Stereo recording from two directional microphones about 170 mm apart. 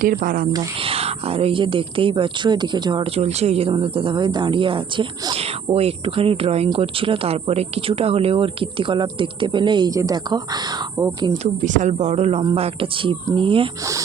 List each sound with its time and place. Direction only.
0.0 s speech: 55° right (ahead or behind)
0.5 s speech: 35° right (ahead or behind)
11.4 s speech: 45° right (ahead or behind); by 13.7 s 30° right (ahead or behind)